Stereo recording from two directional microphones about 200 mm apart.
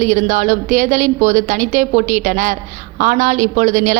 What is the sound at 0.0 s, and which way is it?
A woman's voice, 35° right (ahead or behind).